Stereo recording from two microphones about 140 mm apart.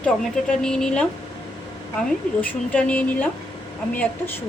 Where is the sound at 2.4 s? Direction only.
10° left (ahead or behind).